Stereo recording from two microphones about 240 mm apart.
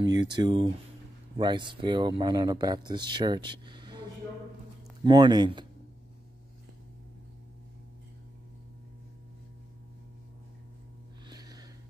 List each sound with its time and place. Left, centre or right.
0.0 s speech: centre
5.0 s speech: centre
11.2 s a sound: centre